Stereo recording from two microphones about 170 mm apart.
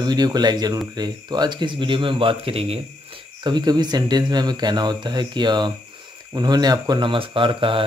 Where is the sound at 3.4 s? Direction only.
25° right (ahead or behind).